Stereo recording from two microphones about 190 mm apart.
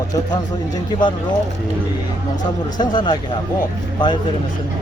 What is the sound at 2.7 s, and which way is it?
Speech, 25° left (ahead or behind).